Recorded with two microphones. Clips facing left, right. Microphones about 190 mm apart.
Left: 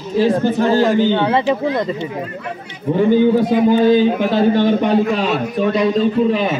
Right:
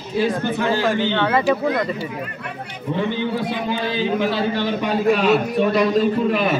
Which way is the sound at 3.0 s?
40° left (ahead or behind).